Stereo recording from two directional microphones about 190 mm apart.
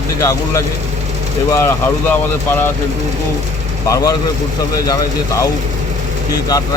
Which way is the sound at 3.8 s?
15° left (ahead or behind).